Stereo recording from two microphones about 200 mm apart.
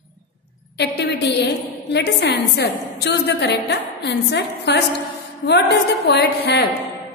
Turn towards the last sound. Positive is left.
turn(degrees=55)  # may be behind; listen again after turning